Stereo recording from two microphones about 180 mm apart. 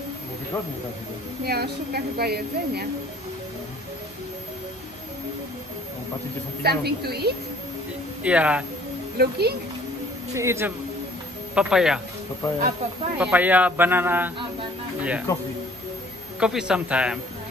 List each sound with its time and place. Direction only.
1.4 s a woman's voice: 60° right (ahead or behind)
6.6 s a woman's voice: 60° right (ahead or behind)
8.2 s a man's voice: 5° right (ahead or behind)
9.2 s a woman's voice: 60° right (ahead or behind)
10.3 s a man's voice: 15° right (ahead or behind)
11.5 s a man's voice: 5° right (ahead or behind)
12.4 s speech: 15° left (ahead or behind)
13.2 s a man's voice: 10° right (ahead or behind)
16.3 s a man's voice: 5° right (ahead or behind)